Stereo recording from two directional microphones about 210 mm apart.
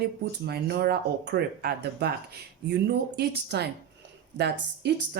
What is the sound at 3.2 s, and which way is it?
Speech, 50° right (ahead or behind).